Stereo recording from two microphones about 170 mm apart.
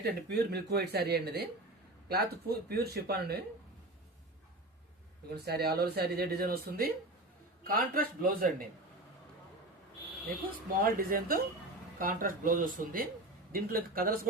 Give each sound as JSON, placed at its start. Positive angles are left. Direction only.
{"t": 0.0, "sound": "speech", "side_deg": -75}
{"t": 5.5, "sound": "a man's voice", "side_deg": -70}
{"t": 10.8, "sound": "a man's voice", "side_deg": -55}